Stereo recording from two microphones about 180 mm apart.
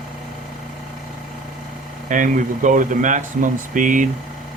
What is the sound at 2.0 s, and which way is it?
Speech, 45° right (ahead or behind).